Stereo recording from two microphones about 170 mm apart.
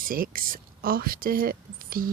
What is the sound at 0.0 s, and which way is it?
Speech, 55° right (ahead or behind).